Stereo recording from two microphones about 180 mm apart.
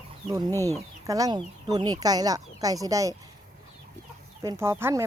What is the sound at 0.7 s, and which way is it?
Speech, 20° right (ahead or behind).